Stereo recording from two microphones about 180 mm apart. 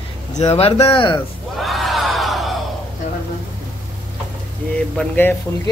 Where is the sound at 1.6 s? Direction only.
Centre (ahead or behind).